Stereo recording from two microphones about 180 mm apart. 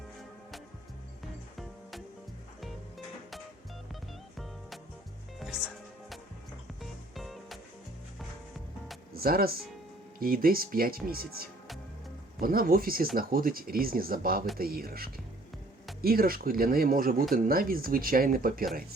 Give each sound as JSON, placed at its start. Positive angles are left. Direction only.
{"t": 5.4, "sound": "music", "side_deg": 0}
{"t": 7.2, "sound": "music", "side_deg": 0}
{"t": 9.1, "sound": "speech", "side_deg": -55}